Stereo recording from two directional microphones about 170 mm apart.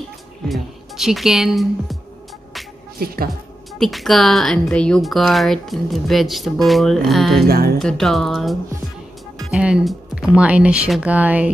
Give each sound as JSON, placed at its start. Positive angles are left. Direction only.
{"t": 0.5, "sound": "a woman's voice", "side_deg": 0}
{"t": 3.0, "sound": "speech", "side_deg": -65}
{"t": 3.7, "sound": "a woman's voice", "side_deg": 0}
{"t": 7.4, "sound": "speech", "side_deg": -60}
{"t": 7.8, "sound": "a woman's voice", "side_deg": 0}